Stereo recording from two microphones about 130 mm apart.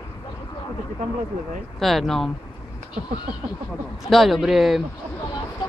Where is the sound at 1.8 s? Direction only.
Centre (ahead or behind).